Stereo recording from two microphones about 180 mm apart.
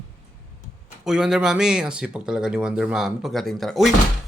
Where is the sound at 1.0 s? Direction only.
5° right (ahead or behind).